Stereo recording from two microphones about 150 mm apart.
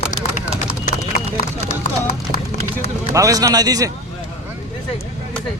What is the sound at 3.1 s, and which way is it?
Speech, 20° right (ahead or behind).